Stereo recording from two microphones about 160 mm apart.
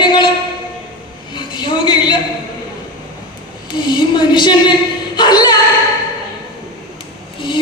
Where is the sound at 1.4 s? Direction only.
30° left (ahead or behind).